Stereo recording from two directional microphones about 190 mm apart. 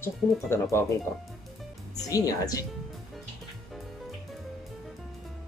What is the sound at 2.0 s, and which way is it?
Speech, 20° left (ahead or behind).